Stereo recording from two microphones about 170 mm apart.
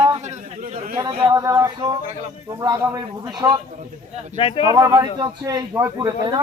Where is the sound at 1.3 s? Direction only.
15° right (ahead or behind).